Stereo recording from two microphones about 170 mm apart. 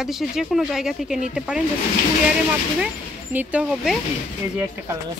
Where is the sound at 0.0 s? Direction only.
Centre (ahead or behind).